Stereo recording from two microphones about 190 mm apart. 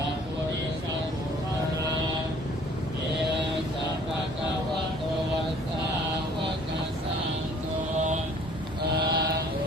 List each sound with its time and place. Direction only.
9.0 s mantra: 55° right (ahead or behind)